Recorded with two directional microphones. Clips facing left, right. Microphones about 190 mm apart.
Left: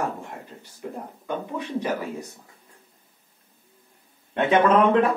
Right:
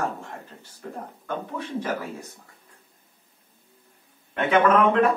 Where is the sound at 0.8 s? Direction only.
15° left (ahead or behind).